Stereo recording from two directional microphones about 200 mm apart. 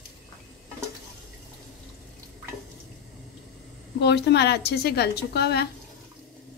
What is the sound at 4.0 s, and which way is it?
A woman's voice, 55° left (ahead or behind).